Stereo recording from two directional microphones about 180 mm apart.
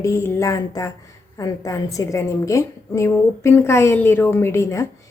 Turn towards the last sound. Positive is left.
turn(degrees=15)  # may be behind; listen again after turning